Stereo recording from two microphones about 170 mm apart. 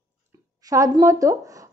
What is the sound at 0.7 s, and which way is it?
Speech, 20° right (ahead or behind).